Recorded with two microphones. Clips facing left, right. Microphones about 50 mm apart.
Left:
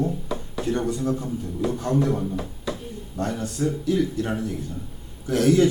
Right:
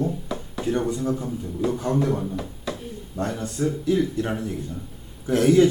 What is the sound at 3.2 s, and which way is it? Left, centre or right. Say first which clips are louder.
A man's voice: even; right.